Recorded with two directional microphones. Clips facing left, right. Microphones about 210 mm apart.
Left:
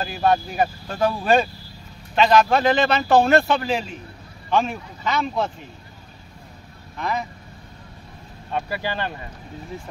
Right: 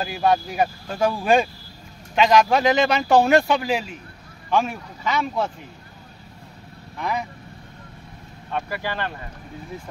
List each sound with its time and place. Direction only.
0.0 s speech: 10° right (ahead or behind)
7.0 s speech: 10° right (ahead or behind)
8.5 s speech: 15° left (ahead or behind)